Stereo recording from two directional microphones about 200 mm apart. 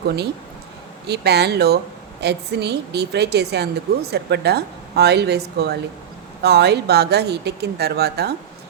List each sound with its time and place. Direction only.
1.0 s a woman's voice: 55° right (ahead or behind)